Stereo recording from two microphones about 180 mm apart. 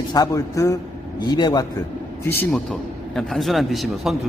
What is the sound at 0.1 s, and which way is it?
A man's voice, 20° left (ahead or behind).